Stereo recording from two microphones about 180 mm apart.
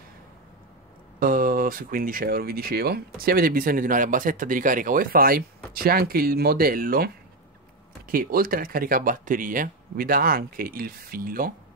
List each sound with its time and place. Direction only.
1.2 s speech: 50° right (ahead or behind)
8.1 s speech: 55° right (ahead or behind)